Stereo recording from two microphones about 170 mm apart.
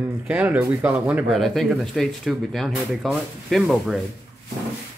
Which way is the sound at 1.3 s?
Centre (ahead or behind).